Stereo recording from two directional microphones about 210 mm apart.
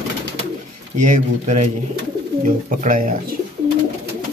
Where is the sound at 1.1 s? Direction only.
35° right (ahead or behind).